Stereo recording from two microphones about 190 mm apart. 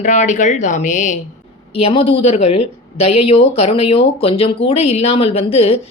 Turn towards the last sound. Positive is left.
turn(degrees=30)  # may be behind; listen again after turning